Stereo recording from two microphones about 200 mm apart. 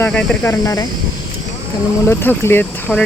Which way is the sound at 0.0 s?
10° left (ahead or behind).